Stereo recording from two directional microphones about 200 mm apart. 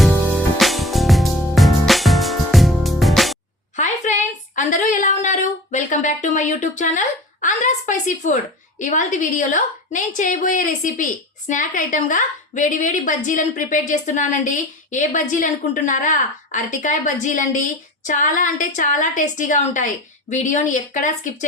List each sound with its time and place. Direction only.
0.0 s music: centre (ahead or behind)
3.8 s a sound: 40° left (ahead or behind)
8.8 s a woman's voice: 40° left (ahead or behind)